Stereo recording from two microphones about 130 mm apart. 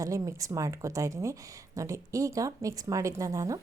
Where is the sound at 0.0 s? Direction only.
25° right (ahead or behind).